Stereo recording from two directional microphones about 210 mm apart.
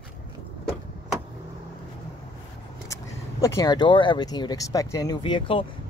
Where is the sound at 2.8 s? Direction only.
15° left (ahead or behind).